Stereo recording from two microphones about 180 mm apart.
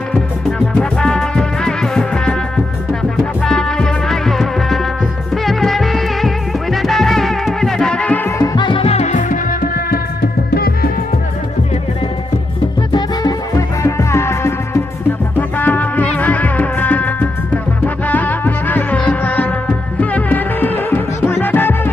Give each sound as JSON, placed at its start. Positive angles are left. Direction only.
{"t": 0.1, "sound": "music", "side_deg": 5}
{"t": 8.5, "sound": "music", "side_deg": 25}
{"t": 12.9, "sound": "music", "side_deg": 20}